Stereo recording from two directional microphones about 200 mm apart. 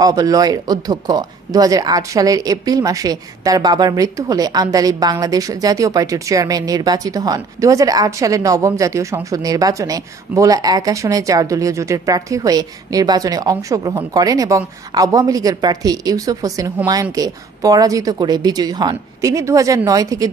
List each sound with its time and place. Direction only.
0.0 s speech: 20° right (ahead or behind)